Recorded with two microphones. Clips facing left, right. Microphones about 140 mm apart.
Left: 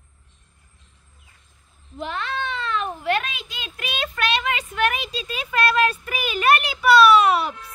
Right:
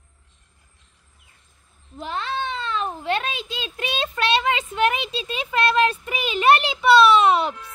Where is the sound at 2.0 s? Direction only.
30° right (ahead or behind).